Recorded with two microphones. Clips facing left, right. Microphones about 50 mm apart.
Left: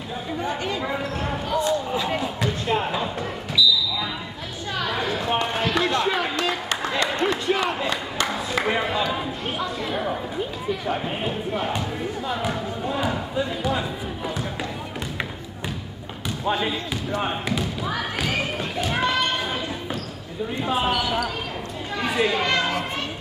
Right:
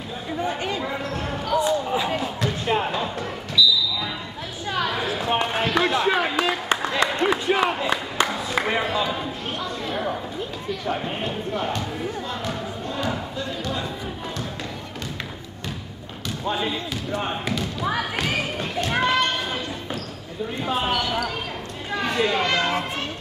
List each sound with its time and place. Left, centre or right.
0.4 s basketball bounce: centre
7.1 s a sound: centre
10.7 s speech: centre
12.3 s a sound: centre
16.4 s speech: centre
18.1 s basketball bounce: centre
20.6 s speech: centre
22.0 s chatter: centre
22.7 s children playing: centre